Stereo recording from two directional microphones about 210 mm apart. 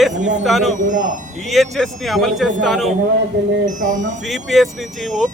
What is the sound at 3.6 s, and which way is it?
Speech, 35° right (ahead or behind).